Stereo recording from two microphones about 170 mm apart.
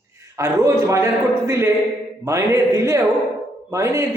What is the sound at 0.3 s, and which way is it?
A man's voice, 20° right (ahead or behind).